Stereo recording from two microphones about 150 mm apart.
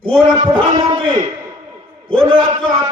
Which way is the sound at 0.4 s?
30° right (ahead or behind).